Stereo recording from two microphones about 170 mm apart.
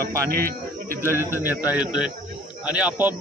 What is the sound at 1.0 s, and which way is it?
A man's voice, 15° right (ahead or behind).